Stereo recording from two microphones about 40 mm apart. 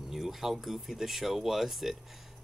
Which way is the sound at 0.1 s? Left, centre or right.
Centre.